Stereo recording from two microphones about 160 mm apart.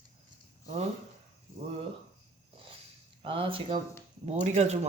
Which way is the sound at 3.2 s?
35° right (ahead or behind).